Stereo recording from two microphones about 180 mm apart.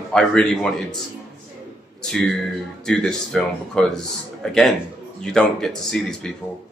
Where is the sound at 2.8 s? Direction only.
5° left (ahead or behind).